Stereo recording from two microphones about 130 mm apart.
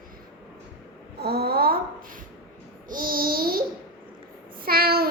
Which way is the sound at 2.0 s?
90° right.